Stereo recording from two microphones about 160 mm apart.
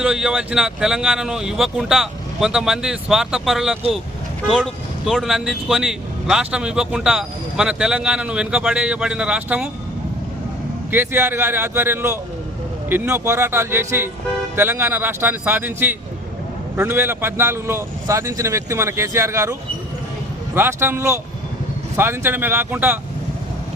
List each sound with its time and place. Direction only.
0.0 s speech: 5° right (ahead or behind)
10.9 s a man's voice: 15° right (ahead or behind)